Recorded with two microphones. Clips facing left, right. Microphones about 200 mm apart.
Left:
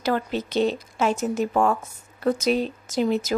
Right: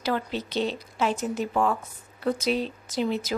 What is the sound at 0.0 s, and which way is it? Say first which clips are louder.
A woman's voice: left 3 dB; 45° left (ahead or behind).